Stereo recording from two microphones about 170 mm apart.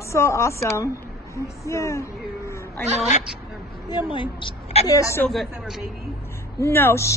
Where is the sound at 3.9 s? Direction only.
30° left (ahead or behind).